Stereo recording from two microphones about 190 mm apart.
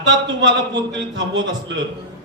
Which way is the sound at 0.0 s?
70° right (ahead or behind).